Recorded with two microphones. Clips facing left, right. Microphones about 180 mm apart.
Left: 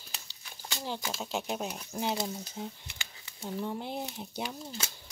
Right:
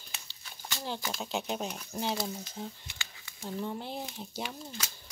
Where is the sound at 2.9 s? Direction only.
Centre (ahead or behind).